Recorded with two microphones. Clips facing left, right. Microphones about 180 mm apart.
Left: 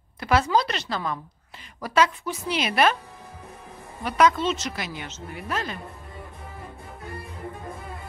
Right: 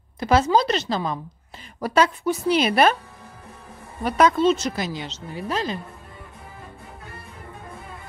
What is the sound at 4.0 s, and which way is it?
A woman's voice, 35° right (ahead or behind).